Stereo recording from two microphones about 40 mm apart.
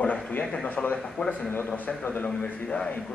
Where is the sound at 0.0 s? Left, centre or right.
Left.